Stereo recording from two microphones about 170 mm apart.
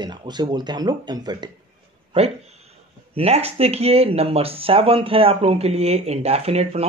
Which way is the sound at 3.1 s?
35° right (ahead or behind).